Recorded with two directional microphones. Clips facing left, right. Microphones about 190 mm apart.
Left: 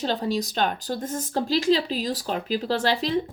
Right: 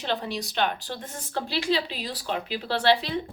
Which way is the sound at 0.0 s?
40° left (ahead or behind).